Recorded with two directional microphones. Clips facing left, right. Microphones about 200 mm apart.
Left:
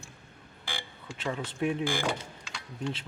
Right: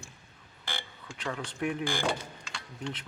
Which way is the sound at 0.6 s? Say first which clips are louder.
Even; 10° left (ahead or behind).